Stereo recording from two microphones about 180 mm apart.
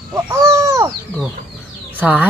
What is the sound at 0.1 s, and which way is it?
Bird, 15° right (ahead or behind).